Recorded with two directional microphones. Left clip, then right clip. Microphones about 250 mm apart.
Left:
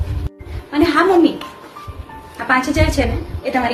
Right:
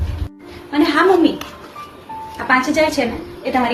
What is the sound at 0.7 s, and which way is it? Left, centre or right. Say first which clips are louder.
Speech: even; centre.